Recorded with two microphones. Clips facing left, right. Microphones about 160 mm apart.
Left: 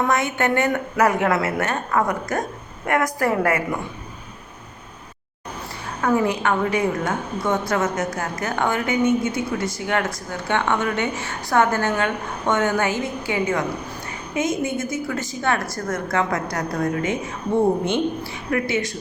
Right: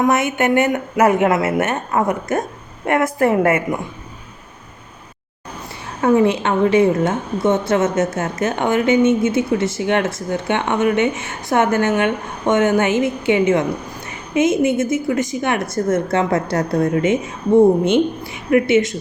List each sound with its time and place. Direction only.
0.0 s a woman's voice: 20° right (ahead or behind)
6.0 s a woman's voice: 25° right (ahead or behind)